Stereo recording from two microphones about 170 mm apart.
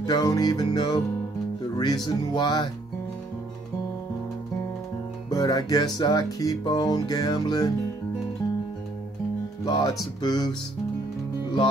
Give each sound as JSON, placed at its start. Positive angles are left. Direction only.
{"t": 0.0, "sound": "music", "side_deg": 20}
{"t": 2.0, "sound": "music", "side_deg": 25}
{"t": 5.3, "sound": "music", "side_deg": 20}
{"t": 9.7, "sound": "music", "side_deg": 25}